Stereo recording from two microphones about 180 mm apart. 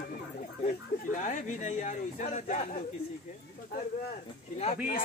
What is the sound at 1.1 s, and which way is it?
Speech, 45° left (ahead or behind).